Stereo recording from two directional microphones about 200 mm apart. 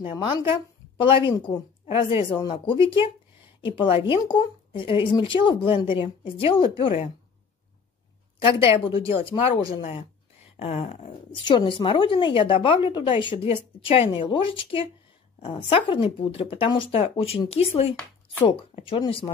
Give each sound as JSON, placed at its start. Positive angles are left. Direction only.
{"t": 0.0, "sound": "a woman's voice", "side_deg": 25}
{"t": 8.5, "sound": "a woman's voice", "side_deg": 25}